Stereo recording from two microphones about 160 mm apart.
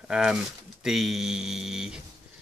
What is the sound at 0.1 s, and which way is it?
Speech, 5° right (ahead or behind).